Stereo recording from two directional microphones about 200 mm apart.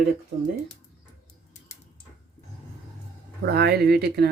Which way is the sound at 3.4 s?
55° right (ahead or behind).